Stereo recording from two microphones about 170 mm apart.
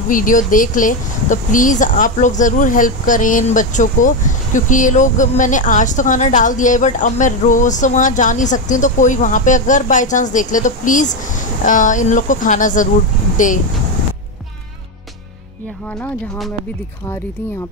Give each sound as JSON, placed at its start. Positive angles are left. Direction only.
{"t": 0.1, "sound": "a woman's voice", "side_deg": 50}